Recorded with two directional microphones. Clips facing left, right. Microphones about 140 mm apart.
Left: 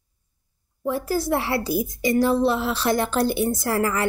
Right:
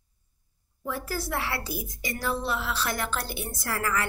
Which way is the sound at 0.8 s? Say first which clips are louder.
Left 9 dB; 25° left (ahead or behind).